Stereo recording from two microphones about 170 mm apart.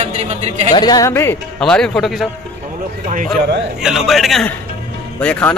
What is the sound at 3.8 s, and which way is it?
A man's voice, centre (ahead or behind).